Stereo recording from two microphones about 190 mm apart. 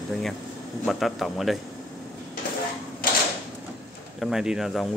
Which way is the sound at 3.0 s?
50° left (ahead or behind).